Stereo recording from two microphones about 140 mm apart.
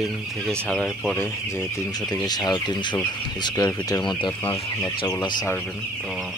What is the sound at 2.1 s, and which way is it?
Speech, 25° left (ahead or behind).